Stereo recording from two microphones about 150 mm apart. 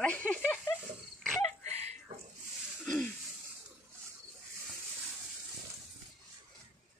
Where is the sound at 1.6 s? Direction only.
45° right (ahead or behind).